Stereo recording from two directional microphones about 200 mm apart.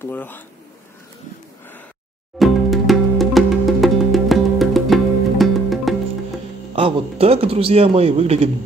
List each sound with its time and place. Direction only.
0.0 s speech: 10° left (ahead or behind)
2.3 s music: centre (ahead or behind)
6.7 s a man's voice: 30° right (ahead or behind)